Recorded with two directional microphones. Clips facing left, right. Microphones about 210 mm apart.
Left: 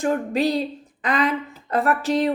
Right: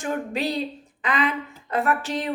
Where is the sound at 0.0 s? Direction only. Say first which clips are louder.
Left 5 dB; 40° left (ahead or behind).